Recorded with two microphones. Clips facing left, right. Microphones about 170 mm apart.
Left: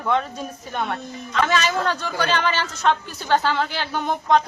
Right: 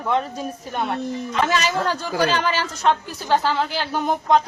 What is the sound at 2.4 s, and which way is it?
Speech, 35° right (ahead or behind).